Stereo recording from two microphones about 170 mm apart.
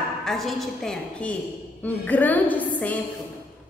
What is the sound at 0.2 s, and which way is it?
A woman's voice, centre (ahead or behind).